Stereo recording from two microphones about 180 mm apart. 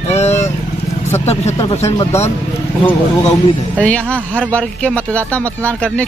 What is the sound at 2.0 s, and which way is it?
Speech, 15° left (ahead or behind).